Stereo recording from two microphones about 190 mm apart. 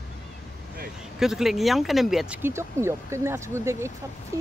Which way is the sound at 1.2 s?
Centre (ahead or behind).